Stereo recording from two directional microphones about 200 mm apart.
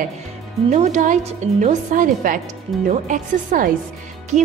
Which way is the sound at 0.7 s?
35° right (ahead or behind).